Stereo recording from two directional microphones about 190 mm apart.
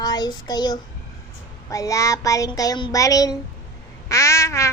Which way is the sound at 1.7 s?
15° left (ahead or behind).